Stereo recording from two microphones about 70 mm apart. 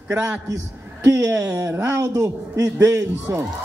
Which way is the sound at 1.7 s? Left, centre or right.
Right.